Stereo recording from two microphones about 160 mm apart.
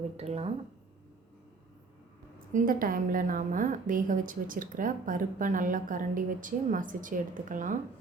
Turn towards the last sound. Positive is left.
turn(degrees=-55)  # may be behind; listen again after turning